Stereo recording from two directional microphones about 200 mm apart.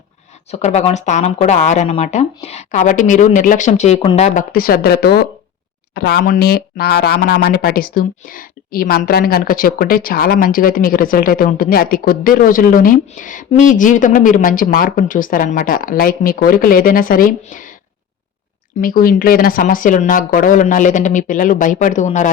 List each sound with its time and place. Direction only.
0.5 s speech: 35° left (ahead or behind)
4.5 s speech: 50° left (ahead or behind)
18.8 s speech: 45° left (ahead or behind)